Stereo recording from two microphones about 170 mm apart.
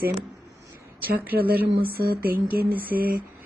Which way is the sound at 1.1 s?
60° right (ahead or behind).